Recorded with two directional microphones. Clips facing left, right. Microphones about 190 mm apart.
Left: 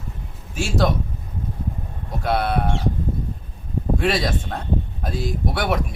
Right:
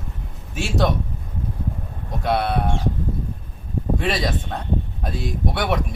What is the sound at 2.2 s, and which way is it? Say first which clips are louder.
Speech: even; centre (ahead or behind).